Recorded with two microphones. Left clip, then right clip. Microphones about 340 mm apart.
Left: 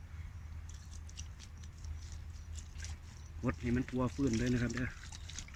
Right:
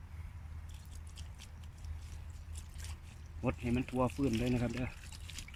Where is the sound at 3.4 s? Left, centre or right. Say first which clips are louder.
Right 1 dB; centre.